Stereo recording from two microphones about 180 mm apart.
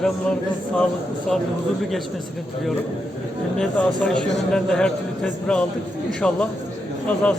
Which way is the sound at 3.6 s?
5° left (ahead or behind).